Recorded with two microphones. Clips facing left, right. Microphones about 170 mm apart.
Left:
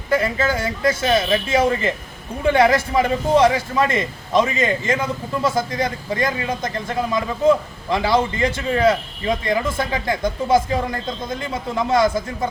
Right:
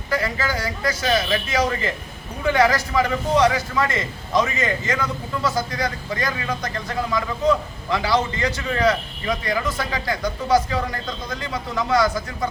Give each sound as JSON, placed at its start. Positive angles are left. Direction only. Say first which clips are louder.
{"t": 0.1, "sound": "a man's voice", "louder": "left 5 dB", "side_deg": 25}